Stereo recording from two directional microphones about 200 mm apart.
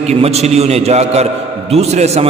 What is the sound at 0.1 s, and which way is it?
A man's voice, 30° right (ahead or behind).